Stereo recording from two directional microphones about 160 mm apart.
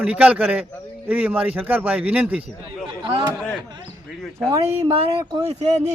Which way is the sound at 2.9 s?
30° right (ahead or behind).